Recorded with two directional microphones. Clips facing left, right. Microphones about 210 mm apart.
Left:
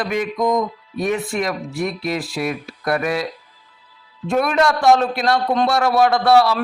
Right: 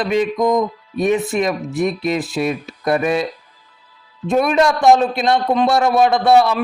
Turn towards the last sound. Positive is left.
turn(degrees=-20)  # may be behind; listen again after turning